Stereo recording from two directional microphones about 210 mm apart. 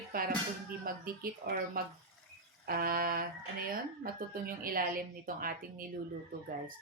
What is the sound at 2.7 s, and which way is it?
Speech, 45° right (ahead or behind).